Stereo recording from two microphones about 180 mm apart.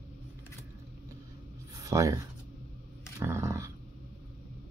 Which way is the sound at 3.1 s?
15° right (ahead or behind).